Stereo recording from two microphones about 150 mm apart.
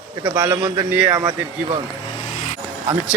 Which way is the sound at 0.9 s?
10° right (ahead or behind).